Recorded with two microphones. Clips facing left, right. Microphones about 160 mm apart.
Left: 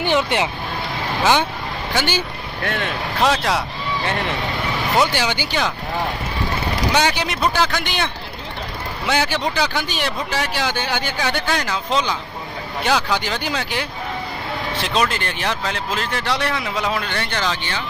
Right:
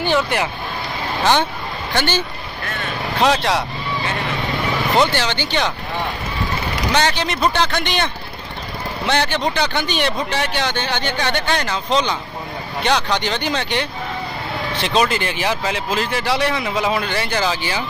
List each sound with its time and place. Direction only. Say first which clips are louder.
0.0 s speech: even; 20° left (ahead or behind)
2.0 s speech: right 2 dB; 10° left (ahead or behind)
2.6 s speech: left 5 dB; 85° left
3.2 s speech: right 2 dB; centre (ahead or behind)
4.9 s speech: right 1 dB; 10° left (ahead or behind)
6.9 s speech: right 1 dB; 10° left (ahead or behind); by 17.8 s 5° right (ahead or behind)